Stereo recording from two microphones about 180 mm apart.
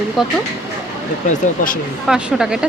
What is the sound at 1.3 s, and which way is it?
Speech, 50° left (ahead or behind).